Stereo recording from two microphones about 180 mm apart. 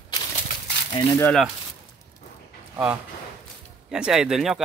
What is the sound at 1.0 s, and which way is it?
Speech, 15° left (ahead or behind).